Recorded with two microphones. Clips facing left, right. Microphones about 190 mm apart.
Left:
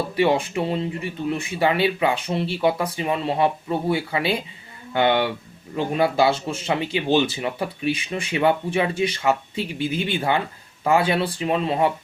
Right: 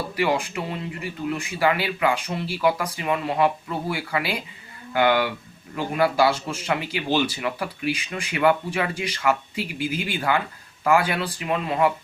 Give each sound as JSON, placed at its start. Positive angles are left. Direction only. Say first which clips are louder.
{"t": 0.2, "sound": "speech", "louder": "left 4 dB", "side_deg": 25}